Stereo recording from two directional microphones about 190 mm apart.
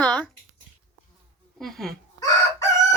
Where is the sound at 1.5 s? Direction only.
Centre (ahead or behind).